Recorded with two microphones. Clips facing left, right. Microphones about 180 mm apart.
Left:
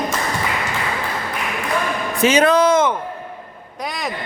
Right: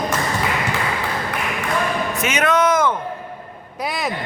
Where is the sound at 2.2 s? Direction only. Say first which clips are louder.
Left 6 dB; 30° left (ahead or behind).